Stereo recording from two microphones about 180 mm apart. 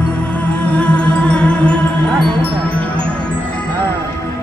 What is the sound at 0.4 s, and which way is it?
Music, 5° left (ahead or behind).